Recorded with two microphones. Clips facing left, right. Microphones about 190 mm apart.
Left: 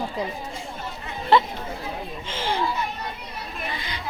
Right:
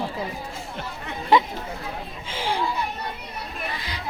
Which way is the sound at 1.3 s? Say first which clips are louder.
Even; 15° right (ahead or behind).